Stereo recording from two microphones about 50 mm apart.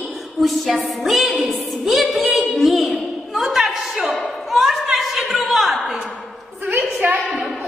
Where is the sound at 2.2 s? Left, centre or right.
Centre.